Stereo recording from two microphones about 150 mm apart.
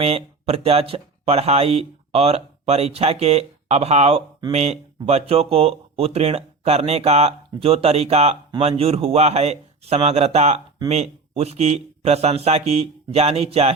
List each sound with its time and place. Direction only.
0.0 s speech: 40° right (ahead or behind)